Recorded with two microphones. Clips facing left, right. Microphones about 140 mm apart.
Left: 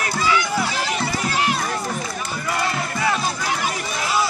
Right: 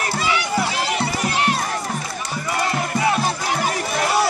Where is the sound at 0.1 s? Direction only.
25° right (ahead or behind).